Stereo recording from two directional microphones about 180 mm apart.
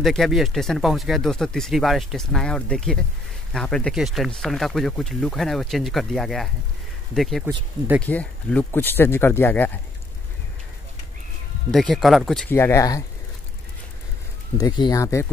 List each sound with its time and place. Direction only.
0.0 s speech: centre (ahead or behind)
11.7 s speech: centre (ahead or behind)
12.5 s speech: 15° left (ahead or behind)
14.6 s speech: 25° left (ahead or behind)